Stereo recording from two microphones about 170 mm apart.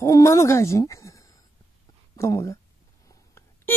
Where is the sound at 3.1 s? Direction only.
15° left (ahead or behind).